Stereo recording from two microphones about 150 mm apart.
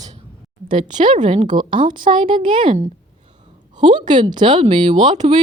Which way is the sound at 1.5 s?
30° right (ahead or behind).